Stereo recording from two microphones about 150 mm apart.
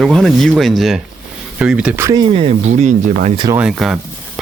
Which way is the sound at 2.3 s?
45° right (ahead or behind).